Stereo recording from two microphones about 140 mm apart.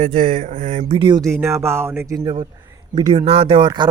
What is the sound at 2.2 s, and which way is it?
Speech, 35° right (ahead or behind).